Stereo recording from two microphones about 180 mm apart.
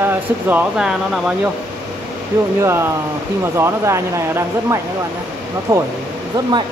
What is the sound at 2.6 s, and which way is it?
Speech, 15° right (ahead or behind).